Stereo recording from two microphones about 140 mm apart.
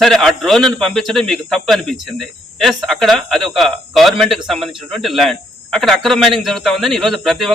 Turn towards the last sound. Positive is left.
turn(degrees=0)  # may be behind; listen again after turning